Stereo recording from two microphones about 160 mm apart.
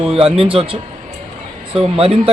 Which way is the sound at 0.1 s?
35° right (ahead or behind).